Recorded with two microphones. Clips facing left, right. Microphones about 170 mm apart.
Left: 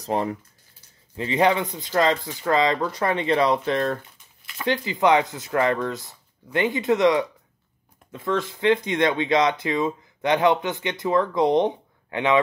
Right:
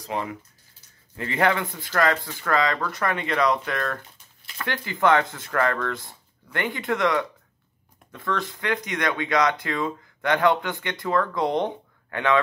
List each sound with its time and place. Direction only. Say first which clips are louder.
0.0 s speech: left 5 dB; 35° left (ahead or behind)
1.1 s speech: left 3 dB; 20° left (ahead or behind)